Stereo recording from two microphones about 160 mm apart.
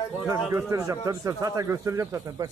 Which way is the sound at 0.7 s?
20° right (ahead or behind).